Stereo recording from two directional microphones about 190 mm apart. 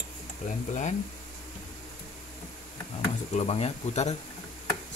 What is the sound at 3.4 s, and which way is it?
Speech, 35° left (ahead or behind).